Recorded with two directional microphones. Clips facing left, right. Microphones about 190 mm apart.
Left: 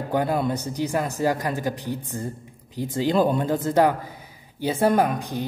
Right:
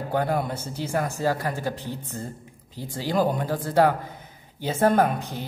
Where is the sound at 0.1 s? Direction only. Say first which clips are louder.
Left 2 dB; 15° left (ahead or behind).